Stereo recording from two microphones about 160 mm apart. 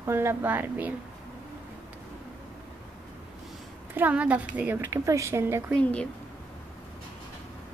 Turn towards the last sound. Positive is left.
turn(degrees=5)  # may be behind; listen again after turning